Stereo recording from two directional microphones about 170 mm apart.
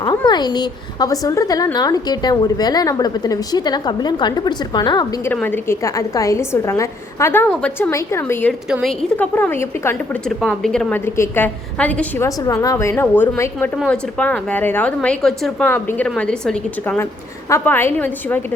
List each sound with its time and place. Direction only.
0.3 s a woman's voice: 25° left (ahead or behind)
5.3 s a woman's voice: 10° left (ahead or behind)
12.4 s a woman's voice: 20° left (ahead or behind)
13.7 s a woman's voice: 5° left (ahead or behind)